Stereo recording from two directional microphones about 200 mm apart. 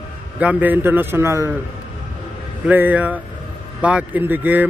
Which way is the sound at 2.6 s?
10° right (ahead or behind).